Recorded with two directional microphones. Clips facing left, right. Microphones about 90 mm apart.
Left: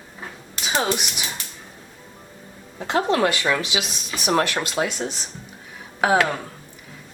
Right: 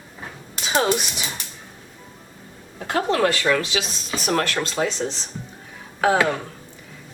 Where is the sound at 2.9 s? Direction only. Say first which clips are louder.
Even; 20° left (ahead or behind).